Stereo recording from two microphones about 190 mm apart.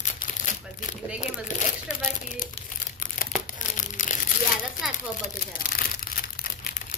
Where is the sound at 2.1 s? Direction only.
45° left (ahead or behind).